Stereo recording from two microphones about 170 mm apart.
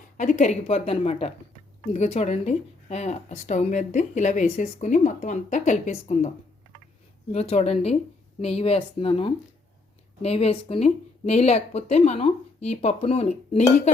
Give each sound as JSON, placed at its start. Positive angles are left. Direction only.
{"t": 0.2, "sound": "speech", "side_deg": 45}
{"t": 7.3, "sound": "speech", "side_deg": 40}